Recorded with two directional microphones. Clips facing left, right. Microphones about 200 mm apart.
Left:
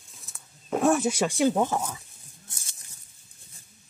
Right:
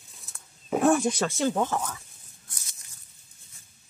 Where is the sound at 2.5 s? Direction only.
30° left (ahead or behind).